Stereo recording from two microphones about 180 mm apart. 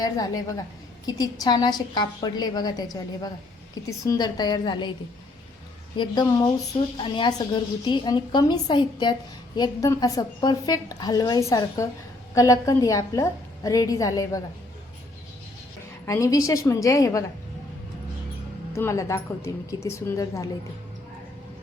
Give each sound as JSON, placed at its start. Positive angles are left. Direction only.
{"t": 0.0, "sound": "a woman's voice", "side_deg": 20}
{"t": 6.0, "sound": "a woman's voice", "side_deg": 25}
{"t": 16.0, "sound": "a woman's voice", "side_deg": 20}
{"t": 18.7, "sound": "a woman's voice", "side_deg": 15}